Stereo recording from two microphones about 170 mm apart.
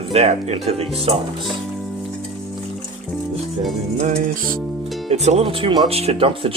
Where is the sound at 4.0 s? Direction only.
45° right (ahead or behind).